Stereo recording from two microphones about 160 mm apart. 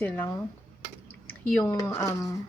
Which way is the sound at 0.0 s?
15° left (ahead or behind).